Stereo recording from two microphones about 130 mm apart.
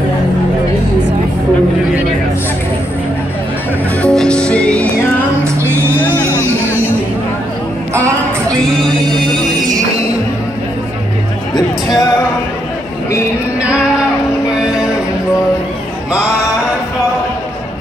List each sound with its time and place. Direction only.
4.0 s music: 5° left (ahead or behind)
5.4 s music: 20° right (ahead or behind)
5.9 s music: 10° left (ahead or behind)
6.2 s a sound: 20° right (ahead or behind)
9.3 s music: 30° right (ahead or behind)